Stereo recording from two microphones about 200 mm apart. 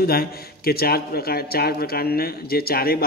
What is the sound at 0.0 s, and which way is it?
A man's voice, 50° left (ahead or behind).